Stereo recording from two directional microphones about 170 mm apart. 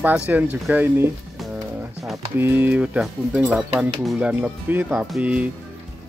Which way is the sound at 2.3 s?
10° right (ahead or behind).